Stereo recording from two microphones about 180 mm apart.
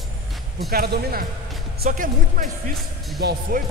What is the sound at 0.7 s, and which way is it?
Speech, 60° right (ahead or behind).